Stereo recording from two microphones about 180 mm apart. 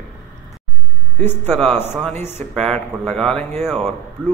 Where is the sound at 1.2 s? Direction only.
10° left (ahead or behind).